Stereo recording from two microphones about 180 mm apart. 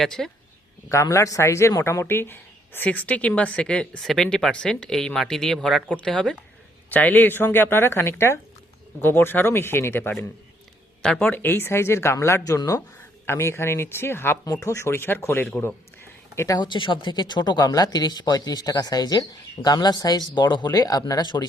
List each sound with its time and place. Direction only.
0.0 s speech: centre (ahead or behind)
0.9 s speech: 15° left (ahead or behind)